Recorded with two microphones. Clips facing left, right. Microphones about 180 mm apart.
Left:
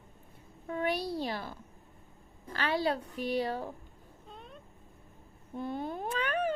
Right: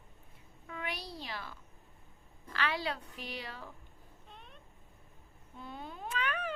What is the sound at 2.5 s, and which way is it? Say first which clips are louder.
A woman's voice: left 5 dB; 40° left (ahead or behind).